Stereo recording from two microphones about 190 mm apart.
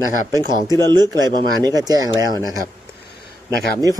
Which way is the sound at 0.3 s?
20° right (ahead or behind).